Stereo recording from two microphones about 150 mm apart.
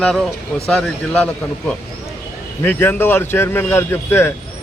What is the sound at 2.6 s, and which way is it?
A man's voice, 10° left (ahead or behind).